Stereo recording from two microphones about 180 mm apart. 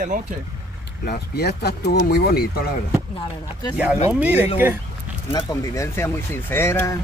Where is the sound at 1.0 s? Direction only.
60° left (ahead or behind).